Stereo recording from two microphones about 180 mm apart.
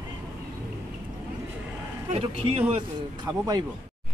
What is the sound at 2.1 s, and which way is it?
Speech, 30° right (ahead or behind).